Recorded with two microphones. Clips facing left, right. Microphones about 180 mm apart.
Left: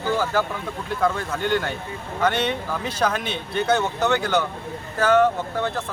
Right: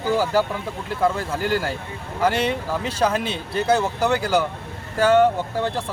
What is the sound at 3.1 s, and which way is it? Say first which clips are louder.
Speech: right 2 dB; 30° right (ahead or behind).